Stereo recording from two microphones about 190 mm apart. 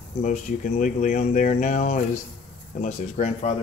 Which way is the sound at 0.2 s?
40° left (ahead or behind).